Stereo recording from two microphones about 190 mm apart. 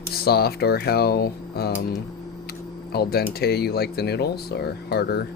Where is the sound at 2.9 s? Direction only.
55° left (ahead or behind).